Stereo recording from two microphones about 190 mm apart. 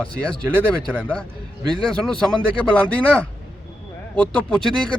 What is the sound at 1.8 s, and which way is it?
Speech, 5° left (ahead or behind).